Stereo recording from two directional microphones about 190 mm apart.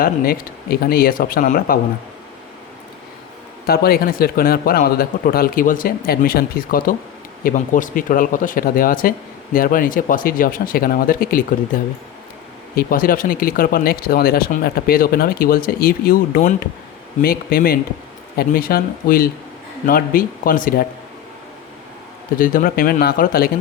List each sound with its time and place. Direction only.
0.0 s speech: 50° left (ahead or behind)
3.7 s speech: 55° left (ahead or behind)
22.4 s speech: 50° left (ahead or behind)